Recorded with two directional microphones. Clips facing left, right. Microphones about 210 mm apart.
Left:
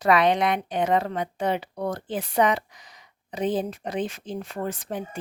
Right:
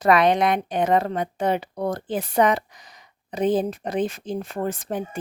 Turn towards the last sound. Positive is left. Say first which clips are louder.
# right 3 dB
turn(degrees=-50)  # may be behind; listen again after turning